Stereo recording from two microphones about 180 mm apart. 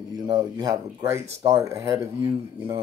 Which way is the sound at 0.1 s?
20° right (ahead or behind).